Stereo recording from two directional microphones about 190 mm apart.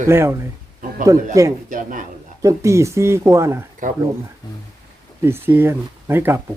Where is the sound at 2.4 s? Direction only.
15° right (ahead or behind).